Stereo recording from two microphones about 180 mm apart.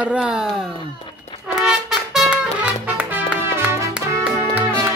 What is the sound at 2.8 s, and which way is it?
Music, 10° right (ahead or behind).